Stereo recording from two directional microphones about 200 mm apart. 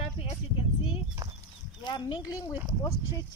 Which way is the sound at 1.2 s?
15° right (ahead or behind).